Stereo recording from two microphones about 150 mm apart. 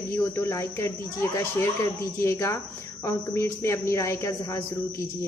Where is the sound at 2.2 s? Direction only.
15° left (ahead or behind).